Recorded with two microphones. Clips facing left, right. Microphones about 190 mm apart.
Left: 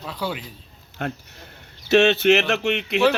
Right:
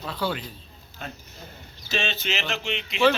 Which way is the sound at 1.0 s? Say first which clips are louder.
Left 10 dB; 75° left (ahead or behind).